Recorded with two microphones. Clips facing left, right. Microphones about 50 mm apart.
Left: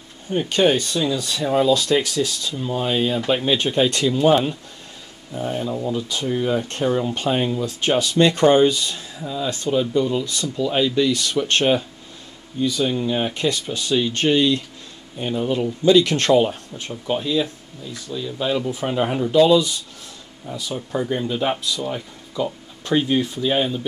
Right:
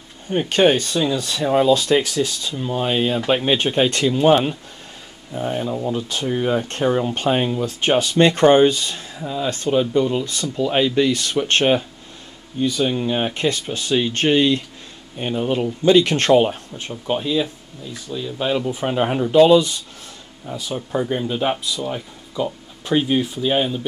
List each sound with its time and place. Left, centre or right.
0.3 s speech: right
16.8 s speech: centre
19.3 s speech: right
21.0 s speech: centre